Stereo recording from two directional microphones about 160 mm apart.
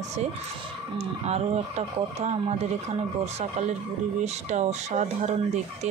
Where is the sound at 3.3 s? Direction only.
45° right (ahead or behind).